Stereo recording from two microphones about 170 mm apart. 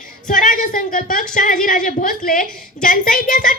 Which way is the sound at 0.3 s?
50° left (ahead or behind).